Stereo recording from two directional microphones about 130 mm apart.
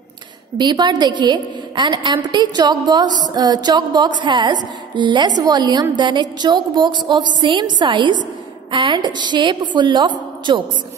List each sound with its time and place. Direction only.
0.6 s a woman's voice: 35° right (ahead or behind)